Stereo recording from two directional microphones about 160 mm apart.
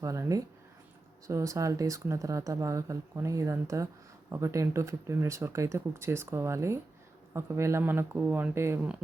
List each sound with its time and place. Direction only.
0.0 s speech: 20° right (ahead or behind)